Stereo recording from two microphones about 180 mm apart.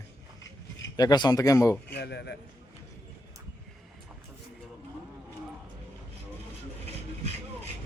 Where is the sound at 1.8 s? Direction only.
65° left (ahead or behind).